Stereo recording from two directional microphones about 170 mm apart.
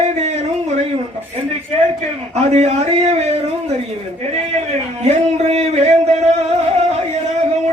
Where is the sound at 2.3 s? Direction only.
40° right (ahead or behind).